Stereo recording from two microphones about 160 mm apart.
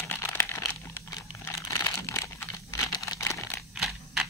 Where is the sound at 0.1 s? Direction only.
15° left (ahead or behind).